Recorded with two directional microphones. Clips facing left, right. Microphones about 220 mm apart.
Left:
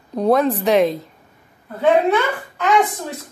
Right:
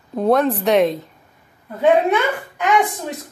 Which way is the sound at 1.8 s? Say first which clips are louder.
Even; 15° right (ahead or behind).